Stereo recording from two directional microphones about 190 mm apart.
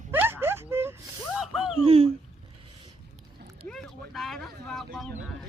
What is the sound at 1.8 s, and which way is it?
Speech, 30° right (ahead or behind).